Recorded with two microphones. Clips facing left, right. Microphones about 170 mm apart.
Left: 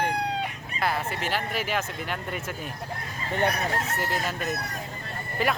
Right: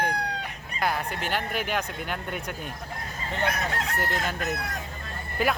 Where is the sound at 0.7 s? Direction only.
Centre (ahead or behind).